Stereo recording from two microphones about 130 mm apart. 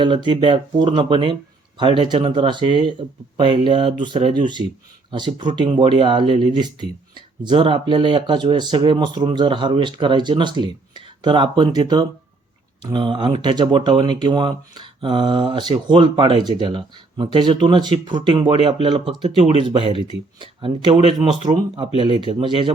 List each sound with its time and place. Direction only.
0.0 s speech: 40° right (ahead or behind)